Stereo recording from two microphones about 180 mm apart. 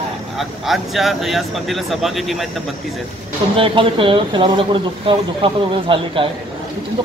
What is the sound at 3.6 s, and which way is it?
Speech, 30° right (ahead or behind).